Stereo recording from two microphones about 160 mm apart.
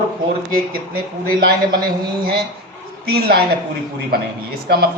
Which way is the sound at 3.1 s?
80° right.